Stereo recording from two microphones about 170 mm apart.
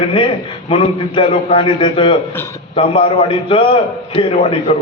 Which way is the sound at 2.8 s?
30° left (ahead or behind).